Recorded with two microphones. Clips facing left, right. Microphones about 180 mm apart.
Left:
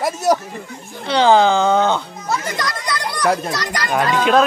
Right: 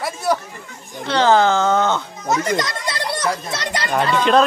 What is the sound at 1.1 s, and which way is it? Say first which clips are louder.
Speech: left 2 dB; 15° left (ahead or behind).